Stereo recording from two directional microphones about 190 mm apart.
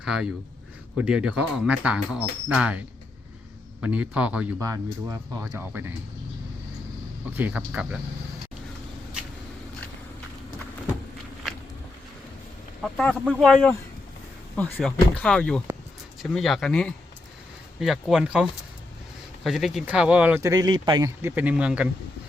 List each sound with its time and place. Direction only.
0.0 s speech: 5° right (ahead or behind)
4.6 s speech: 15° right (ahead or behind)
7.3 s speech: 10° right (ahead or behind)
12.8 s speech: 5° left (ahead or behind)
19.5 s speech: centre (ahead or behind)